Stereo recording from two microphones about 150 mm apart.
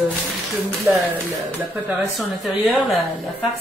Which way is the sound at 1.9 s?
Centre (ahead or behind).